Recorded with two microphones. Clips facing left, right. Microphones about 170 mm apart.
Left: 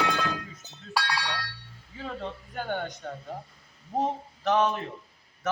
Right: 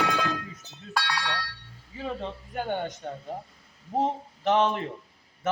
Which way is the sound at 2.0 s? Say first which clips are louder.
Right 2 dB; 15° right (ahead or behind).